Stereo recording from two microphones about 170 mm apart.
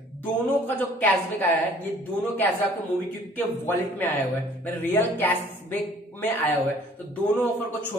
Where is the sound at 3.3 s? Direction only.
10° left (ahead or behind).